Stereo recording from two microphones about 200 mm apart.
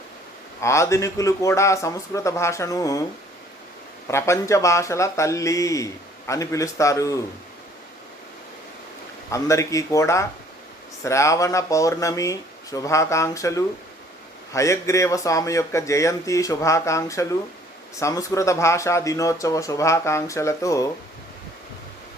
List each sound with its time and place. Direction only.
0.6 s speech: 15° left (ahead or behind)
4.1 s speech: 15° left (ahead or behind)
9.3 s speech: 15° left (ahead or behind)